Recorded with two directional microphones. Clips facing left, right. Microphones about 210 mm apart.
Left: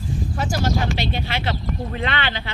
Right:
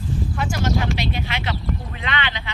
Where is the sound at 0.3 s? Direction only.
35° left (ahead or behind).